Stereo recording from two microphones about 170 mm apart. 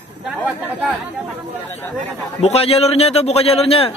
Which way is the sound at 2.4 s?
35° left (ahead or behind).